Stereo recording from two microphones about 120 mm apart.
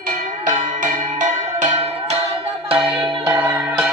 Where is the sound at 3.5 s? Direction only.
10° right (ahead or behind).